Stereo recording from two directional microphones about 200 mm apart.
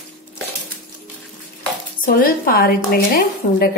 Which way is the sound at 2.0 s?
45° left (ahead or behind).